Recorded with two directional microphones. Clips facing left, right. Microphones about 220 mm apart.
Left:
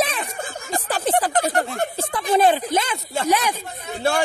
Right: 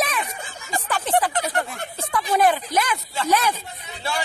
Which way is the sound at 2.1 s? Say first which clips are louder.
Left 1 dB; 25° left (ahead or behind).